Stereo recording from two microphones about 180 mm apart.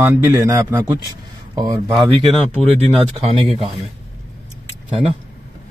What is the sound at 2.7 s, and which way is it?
Speech, 35° right (ahead or behind).